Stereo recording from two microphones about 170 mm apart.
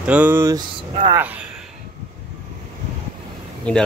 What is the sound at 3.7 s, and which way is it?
Speech, 5° left (ahead or behind).